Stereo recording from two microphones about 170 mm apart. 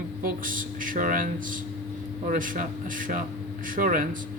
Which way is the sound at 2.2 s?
50° right (ahead or behind).